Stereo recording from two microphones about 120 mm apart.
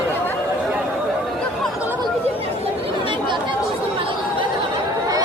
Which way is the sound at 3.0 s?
45° right (ahead or behind).